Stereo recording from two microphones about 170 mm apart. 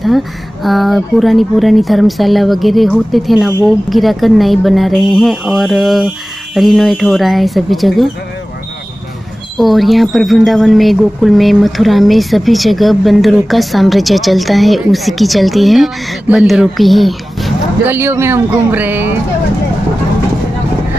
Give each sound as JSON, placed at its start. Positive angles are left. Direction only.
{"t": 0.0, "sound": "speech", "side_deg": 0}
{"t": 9.6, "sound": "speech", "side_deg": 0}
{"t": 17.8, "sound": "speech", "side_deg": -15}